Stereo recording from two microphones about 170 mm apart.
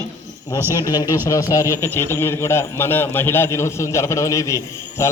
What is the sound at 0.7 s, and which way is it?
A man's voice, 20° left (ahead or behind).